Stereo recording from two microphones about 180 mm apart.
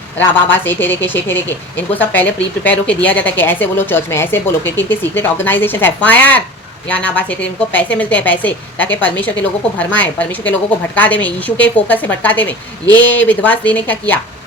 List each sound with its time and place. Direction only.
0.2 s a woman's voice: 10° left (ahead or behind)